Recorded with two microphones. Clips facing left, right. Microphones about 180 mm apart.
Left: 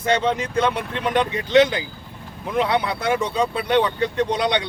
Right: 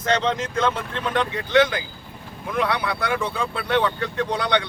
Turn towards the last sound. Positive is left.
turn(degrees=20)  # may be behind; listen again after turning